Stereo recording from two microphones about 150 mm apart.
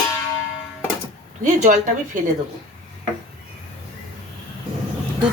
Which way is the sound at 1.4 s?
55° right (ahead or behind).